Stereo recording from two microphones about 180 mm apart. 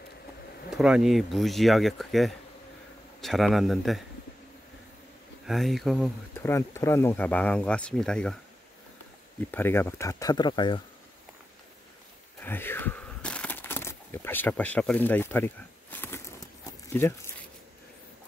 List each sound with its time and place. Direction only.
0.7 s speech: 5° right (ahead or behind)
5.5 s speech: centre (ahead or behind)
6.3 s speech: 15° left (ahead or behind)
9.5 s speech: 10° left (ahead or behind)
12.4 s a sound: 10° left (ahead or behind)
16.9 s speech: 15° left (ahead or behind)